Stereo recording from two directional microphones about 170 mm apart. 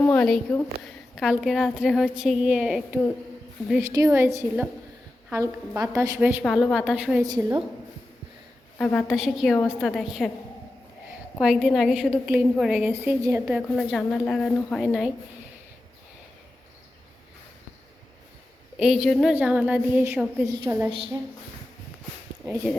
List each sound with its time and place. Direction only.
0.0 s a woman's voice: 10° left (ahead or behind)
0.9 s a woman's voice: 5° right (ahead or behind)
3.8 s a woman's voice: 15° right (ahead or behind)
5.9 s a woman's voice: 10° right (ahead or behind)
6.4 s a woman's voice: centre (ahead or behind)
7.3 s a woman's voice: 25° right (ahead or behind)
8.8 s a woman's voice: 5° left (ahead or behind)
11.3 s a woman's voice: centre (ahead or behind)
13.6 s a woman's voice: centre (ahead or behind)
18.8 s a woman's voice: 5° right (ahead or behind)